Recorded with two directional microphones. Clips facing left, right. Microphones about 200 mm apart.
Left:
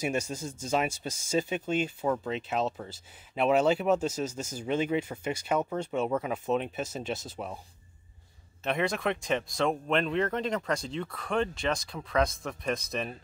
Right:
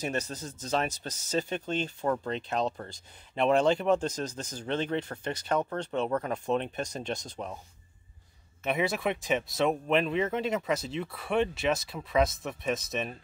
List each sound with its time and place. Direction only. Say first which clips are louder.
0.0 s speech: left 2 dB; 10° left (ahead or behind)
8.6 s speech: even; 5° right (ahead or behind)